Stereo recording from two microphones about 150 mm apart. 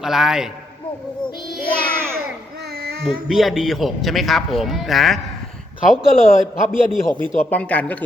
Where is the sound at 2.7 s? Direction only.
90° right.